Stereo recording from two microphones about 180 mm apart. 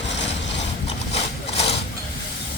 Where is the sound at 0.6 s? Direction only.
35° left (ahead or behind).